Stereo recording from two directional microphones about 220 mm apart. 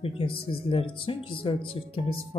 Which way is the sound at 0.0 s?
25° left (ahead or behind).